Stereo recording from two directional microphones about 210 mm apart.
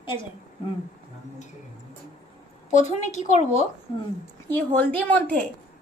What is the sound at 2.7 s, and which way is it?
Speech, 35° left (ahead or behind).